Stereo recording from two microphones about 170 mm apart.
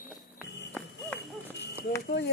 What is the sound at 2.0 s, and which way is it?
Speech, 70° left (ahead or behind).